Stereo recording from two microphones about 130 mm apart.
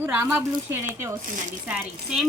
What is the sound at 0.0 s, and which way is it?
Speech, 15° right (ahead or behind).